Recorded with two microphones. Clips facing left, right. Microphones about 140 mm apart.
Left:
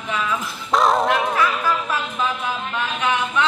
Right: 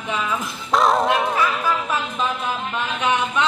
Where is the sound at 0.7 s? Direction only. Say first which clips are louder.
Even; centre (ahead or behind).